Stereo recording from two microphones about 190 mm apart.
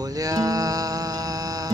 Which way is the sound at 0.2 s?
20° right (ahead or behind).